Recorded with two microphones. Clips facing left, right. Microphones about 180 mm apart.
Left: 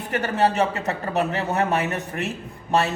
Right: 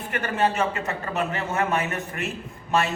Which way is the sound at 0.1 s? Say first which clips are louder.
Left 3 dB; 35° left (ahead or behind).